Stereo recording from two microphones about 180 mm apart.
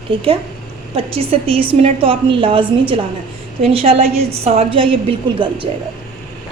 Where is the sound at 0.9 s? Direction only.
35° right (ahead or behind).